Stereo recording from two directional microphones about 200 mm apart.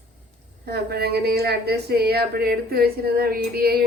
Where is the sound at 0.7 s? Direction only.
55° right (ahead or behind).